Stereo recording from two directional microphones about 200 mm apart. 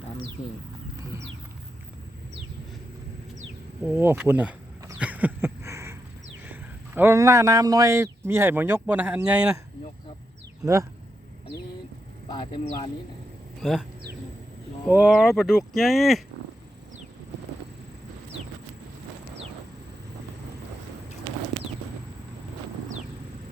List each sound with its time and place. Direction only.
3.8 s a sound: 10° right (ahead or behind)
6.4 s a man's voice: 10° right (ahead or behind)
12.3 s speech: 25° left (ahead or behind)
13.6 s speech: centre (ahead or behind)
14.8 s speech: 5° right (ahead or behind)